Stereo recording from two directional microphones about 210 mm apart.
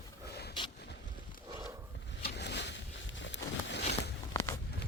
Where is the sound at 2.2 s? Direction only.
55° left (ahead or behind).